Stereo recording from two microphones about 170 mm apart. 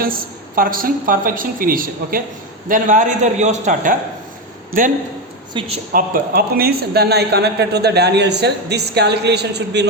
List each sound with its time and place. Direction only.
0.0 s a woman's voice: 55° right (ahead or behind)
5.5 s a woman's voice: 35° right (ahead or behind)
5.9 s a man's voice: 60° right (ahead or behind); by 9.8 s 80° right